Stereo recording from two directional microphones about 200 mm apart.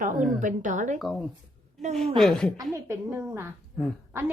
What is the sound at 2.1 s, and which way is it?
Speech, centre (ahead or behind).